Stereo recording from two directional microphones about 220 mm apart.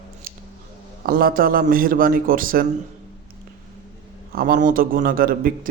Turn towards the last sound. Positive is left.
turn(degrees=-40)  # may be behind; listen again after turning